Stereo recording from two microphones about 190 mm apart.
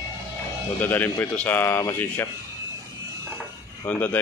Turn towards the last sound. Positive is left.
turn(degrees=10)  # may be behind; listen again after turning